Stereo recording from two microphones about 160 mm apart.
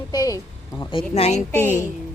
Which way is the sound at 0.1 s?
25° left (ahead or behind).